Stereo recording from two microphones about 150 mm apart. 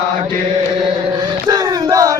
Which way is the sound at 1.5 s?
25° right (ahead or behind).